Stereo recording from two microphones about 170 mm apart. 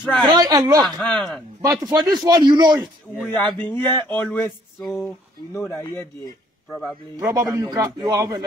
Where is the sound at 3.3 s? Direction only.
10° left (ahead or behind).